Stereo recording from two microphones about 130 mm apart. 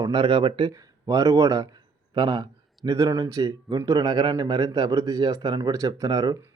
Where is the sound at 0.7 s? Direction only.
25° right (ahead or behind).